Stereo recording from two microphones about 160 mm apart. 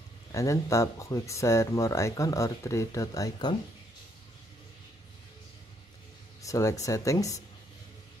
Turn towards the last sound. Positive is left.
turn(degrees=20)  # may be behind; listen again after turning